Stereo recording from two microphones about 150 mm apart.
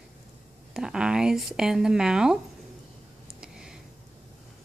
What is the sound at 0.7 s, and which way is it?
Speech, 5° right (ahead or behind).